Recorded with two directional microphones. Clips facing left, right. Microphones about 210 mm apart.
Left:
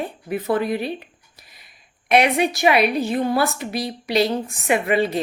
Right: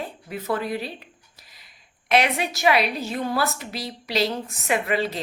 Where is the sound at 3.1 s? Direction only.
15° left (ahead or behind).